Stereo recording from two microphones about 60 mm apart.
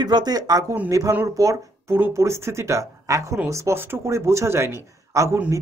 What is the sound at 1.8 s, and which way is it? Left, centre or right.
Speech, right.